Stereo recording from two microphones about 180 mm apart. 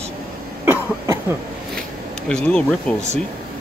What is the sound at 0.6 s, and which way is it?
Cough, 15° right (ahead or behind).